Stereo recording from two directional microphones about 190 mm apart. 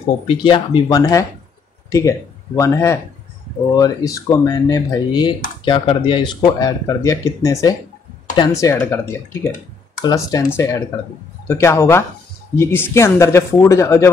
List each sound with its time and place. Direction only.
0.4 s speech: 25° left (ahead or behind)